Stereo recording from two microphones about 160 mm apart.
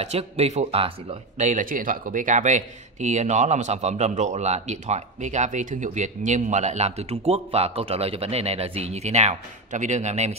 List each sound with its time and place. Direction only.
0.0 s speech: 40° right (ahead or behind)
1.4 s speech: 55° right (ahead or behind)